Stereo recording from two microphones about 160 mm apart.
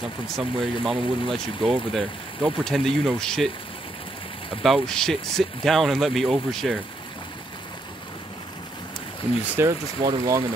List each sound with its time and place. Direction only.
0.4 s speech: centre (ahead or behind)
4.6 s speech: centre (ahead or behind)
9.4 s speech: 10° right (ahead or behind)
10.0 s speech: 25° right (ahead or behind)